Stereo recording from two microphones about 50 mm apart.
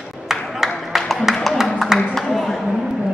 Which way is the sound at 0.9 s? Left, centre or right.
Centre.